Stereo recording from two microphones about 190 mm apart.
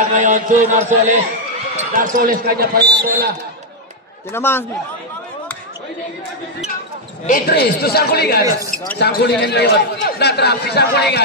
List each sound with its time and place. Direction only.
0.0 s a man's voice: 40° right (ahead or behind); by 3.3 s 55° right (ahead or behind)
4.3 s a man's voice: 10° left (ahead or behind)
7.2 s a man's voice: 50° left (ahead or behind)